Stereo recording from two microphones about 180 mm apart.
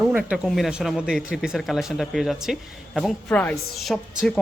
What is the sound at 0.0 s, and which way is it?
Speech, 5° right (ahead or behind).